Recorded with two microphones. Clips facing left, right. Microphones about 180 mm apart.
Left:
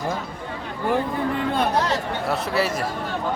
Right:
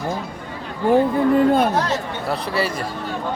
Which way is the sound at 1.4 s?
45° right (ahead or behind).